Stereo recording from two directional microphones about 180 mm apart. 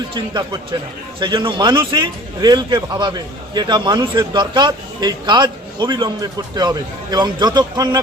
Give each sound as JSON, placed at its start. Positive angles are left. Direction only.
{"t": 0.1, "sound": "a man's voice", "side_deg": -25}